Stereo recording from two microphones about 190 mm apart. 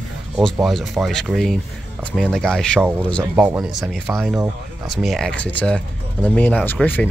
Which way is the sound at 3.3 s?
5° right (ahead or behind).